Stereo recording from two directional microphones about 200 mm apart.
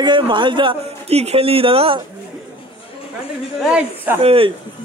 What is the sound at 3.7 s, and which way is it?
Speech, 10° right (ahead or behind).